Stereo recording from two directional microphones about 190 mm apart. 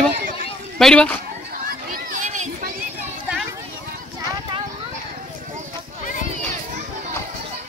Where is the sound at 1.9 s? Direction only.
45° right (ahead or behind).